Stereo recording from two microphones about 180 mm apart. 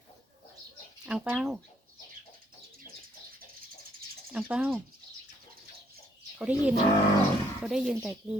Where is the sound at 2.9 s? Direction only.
25° left (ahead or behind).